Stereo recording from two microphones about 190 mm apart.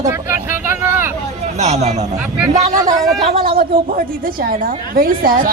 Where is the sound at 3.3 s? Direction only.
50° right (ahead or behind).